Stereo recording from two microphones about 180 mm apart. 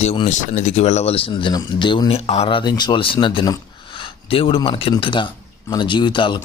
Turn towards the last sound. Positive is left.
turn(degrees=25)  # may be behind; listen again after turning